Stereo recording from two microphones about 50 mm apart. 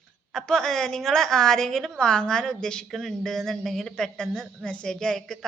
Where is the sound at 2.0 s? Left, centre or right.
Centre.